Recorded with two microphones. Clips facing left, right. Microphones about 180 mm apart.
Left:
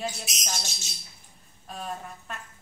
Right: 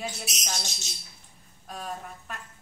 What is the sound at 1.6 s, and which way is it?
Speech, centre (ahead or behind).